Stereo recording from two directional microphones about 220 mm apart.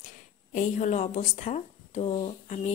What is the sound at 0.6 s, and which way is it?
A woman's voice, 35° left (ahead or behind).